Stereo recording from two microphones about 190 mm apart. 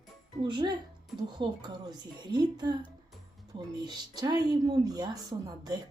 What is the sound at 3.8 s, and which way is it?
Speech, 20° right (ahead or behind).